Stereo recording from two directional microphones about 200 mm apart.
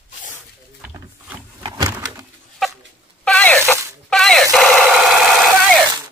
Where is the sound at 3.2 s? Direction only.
5° left (ahead or behind).